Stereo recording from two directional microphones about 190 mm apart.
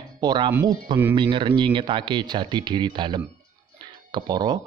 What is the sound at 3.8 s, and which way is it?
Music, 25° right (ahead or behind).